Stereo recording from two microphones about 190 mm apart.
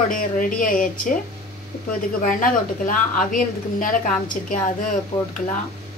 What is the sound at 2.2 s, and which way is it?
A woman's voice, 45° left (ahead or behind).